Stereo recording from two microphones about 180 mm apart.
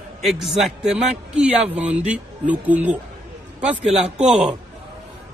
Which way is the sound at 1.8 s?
40° right (ahead or behind).